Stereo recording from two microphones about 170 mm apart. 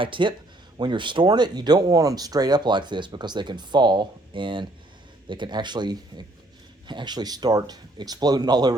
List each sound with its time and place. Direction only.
0.0 s speech: 30° right (ahead or behind)